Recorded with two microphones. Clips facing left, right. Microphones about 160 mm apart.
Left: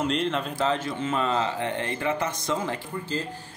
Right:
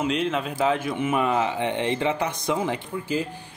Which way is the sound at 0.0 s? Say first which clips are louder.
Right 1 dB; 5° right (ahead or behind).